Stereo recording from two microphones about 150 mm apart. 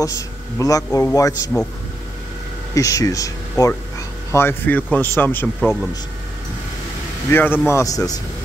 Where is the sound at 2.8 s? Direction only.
20° left (ahead or behind).